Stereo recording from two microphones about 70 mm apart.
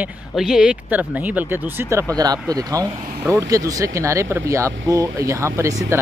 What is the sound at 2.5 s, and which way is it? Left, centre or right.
Speech, right.